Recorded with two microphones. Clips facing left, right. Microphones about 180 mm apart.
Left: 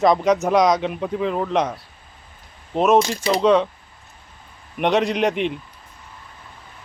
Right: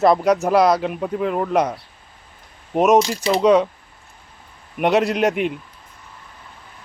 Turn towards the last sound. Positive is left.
turn(degrees=-5)  # may be behind; listen again after turning